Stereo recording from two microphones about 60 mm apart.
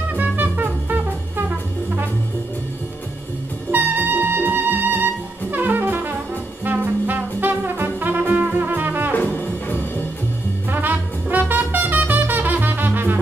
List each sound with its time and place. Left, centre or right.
0.1 s music: right
3.7 s music: right
5.5 s brass instrument: right
6.6 s music: right
9.1 s brass instrument: left
10.7 s music: right